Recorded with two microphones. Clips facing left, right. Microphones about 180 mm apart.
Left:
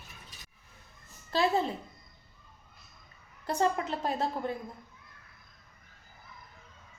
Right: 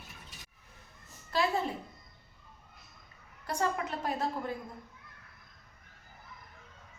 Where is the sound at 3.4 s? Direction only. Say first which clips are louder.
Left 4 dB; 25° left (ahead or behind).